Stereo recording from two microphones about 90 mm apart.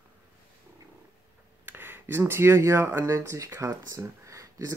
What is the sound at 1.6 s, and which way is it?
Speech, 25° right (ahead or behind).